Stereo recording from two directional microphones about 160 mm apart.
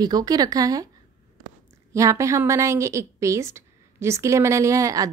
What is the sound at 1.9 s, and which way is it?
A woman's voice, 20° right (ahead or behind).